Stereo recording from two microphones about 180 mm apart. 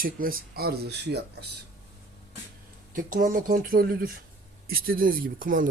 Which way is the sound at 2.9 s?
45° right (ahead or behind).